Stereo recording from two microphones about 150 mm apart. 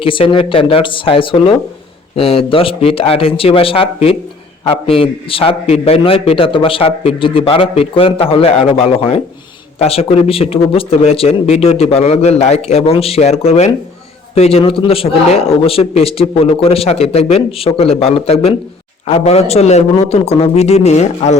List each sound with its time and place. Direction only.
0.0 s a man's voice: 35° left (ahead or behind)